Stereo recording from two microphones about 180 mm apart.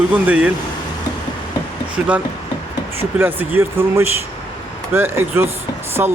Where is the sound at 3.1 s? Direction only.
10° right (ahead or behind).